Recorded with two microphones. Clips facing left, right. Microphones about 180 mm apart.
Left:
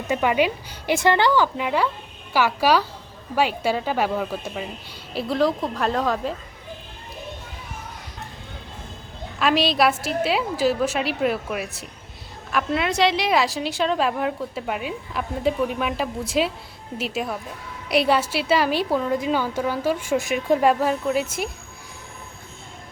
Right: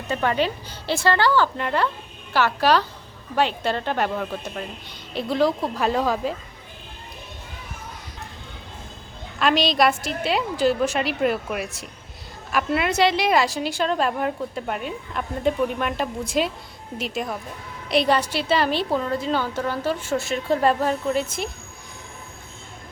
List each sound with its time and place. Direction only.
0.1 s a woman's voice: 10° left (ahead or behind)
9.4 s a woman's voice: 5° left (ahead or behind)